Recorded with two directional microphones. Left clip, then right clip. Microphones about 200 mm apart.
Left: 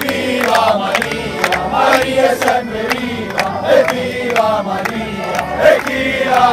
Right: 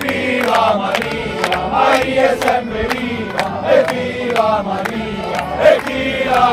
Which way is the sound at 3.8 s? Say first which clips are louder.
Left 2 dB; 55° right (ahead or behind).